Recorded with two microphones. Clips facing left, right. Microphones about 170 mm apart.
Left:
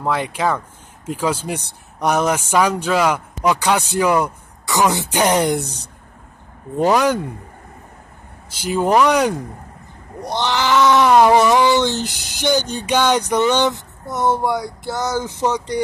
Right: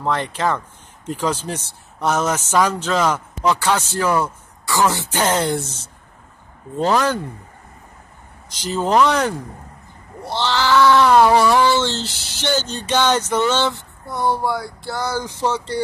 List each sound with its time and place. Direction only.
0.0 s speech: 10° left (ahead or behind)
6.8 s speech: 15° left (ahead or behind)
8.5 s speech: 10° left (ahead or behind)